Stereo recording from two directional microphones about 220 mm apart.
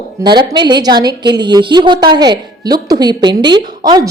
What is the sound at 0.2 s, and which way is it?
A woman's voice, 20° right (ahead or behind).